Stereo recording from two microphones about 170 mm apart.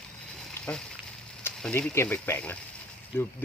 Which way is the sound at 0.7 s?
10° left (ahead or behind).